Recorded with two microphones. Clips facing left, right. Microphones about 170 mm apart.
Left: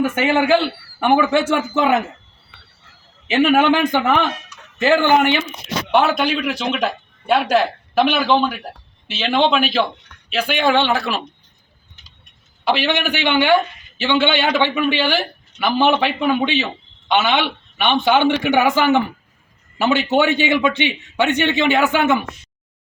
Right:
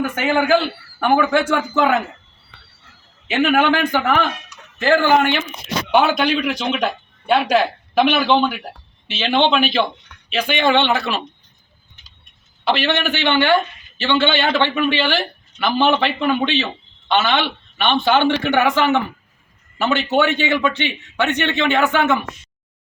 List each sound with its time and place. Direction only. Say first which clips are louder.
0.0 s speech: left 2 dB; 25° left (ahead or behind)
3.4 s speech: left 2 dB; 20° left (ahead or behind)
5.9 s a man's voice: right 1 dB; centre (ahead or behind)
12.6 s speech: even; 10° left (ahead or behind)